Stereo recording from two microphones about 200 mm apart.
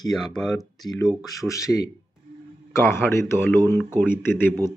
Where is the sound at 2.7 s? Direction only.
10° left (ahead or behind).